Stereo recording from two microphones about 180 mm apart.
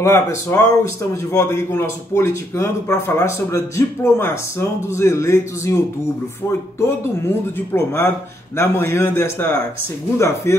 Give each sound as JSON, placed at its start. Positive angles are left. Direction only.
{"t": 0.0, "sound": "a man's voice", "side_deg": 15}
{"t": 7.5, "sound": "a man's voice", "side_deg": 10}